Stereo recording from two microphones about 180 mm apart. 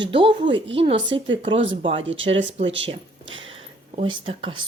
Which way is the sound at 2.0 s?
90° right.